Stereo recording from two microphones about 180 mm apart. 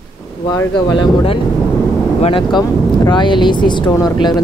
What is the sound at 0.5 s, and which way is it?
A woman's voice, 20° left (ahead or behind).